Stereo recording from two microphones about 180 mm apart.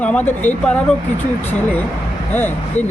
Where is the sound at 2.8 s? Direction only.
40° left (ahead or behind).